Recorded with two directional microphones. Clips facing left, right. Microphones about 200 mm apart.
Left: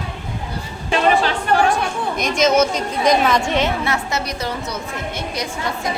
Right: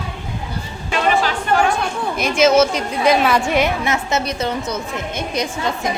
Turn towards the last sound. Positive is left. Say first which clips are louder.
# right 3 dB
turn(degrees=-20)  # may be behind; listen again after turning